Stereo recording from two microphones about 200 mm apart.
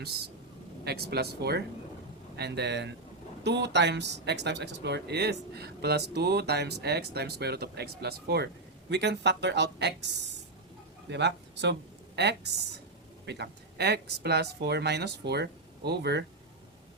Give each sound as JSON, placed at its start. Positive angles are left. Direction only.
{"t": 0.9, "sound": "speech", "side_deg": -55}
{"t": 11.1, "sound": "speech", "side_deg": -60}